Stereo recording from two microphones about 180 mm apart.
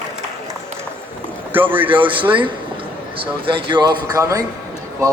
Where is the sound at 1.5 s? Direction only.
10° right (ahead or behind).